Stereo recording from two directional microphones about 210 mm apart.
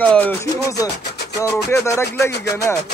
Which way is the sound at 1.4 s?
15° left (ahead or behind).